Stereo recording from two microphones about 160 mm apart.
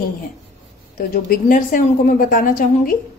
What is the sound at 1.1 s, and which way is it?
A woman's voice, 60° left (ahead or behind).